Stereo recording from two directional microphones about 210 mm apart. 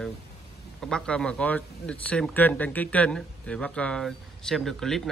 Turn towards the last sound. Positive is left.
turn(degrees=0)  # may be behind; listen again after turning